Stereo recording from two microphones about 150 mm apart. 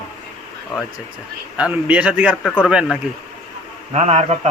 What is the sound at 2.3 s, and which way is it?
Speech, 5° left (ahead or behind).